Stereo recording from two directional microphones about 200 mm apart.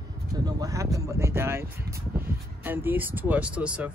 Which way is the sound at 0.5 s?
15° right (ahead or behind).